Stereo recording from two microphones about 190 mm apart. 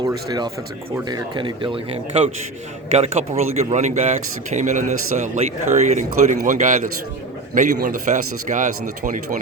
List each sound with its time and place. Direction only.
0.1 s speech: 20° right (ahead or behind)
3.0 s a man's voice: 35° right (ahead or behind)